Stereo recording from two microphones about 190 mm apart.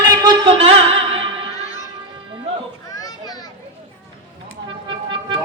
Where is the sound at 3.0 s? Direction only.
20° left (ahead or behind).